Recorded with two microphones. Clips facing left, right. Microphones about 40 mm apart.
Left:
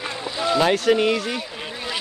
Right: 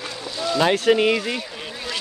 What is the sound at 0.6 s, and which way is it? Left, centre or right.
Speech, centre.